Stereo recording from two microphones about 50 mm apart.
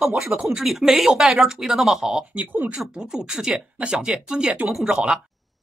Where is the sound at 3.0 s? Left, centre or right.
Centre.